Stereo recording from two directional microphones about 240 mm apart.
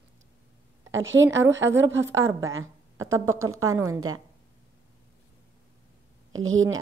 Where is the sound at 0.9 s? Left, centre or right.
Right.